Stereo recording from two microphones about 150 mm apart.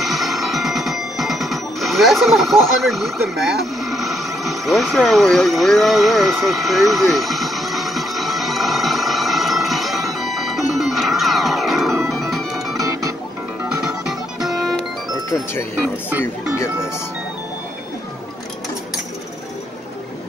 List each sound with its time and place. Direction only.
0.0 s music: centre (ahead or behind)
14.4 s music: centre (ahead or behind)
15.2 s speech: 15° left (ahead or behind)
16.1 s speech: 10° right (ahead or behind)